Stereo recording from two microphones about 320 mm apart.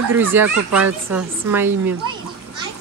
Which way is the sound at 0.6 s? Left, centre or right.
Right.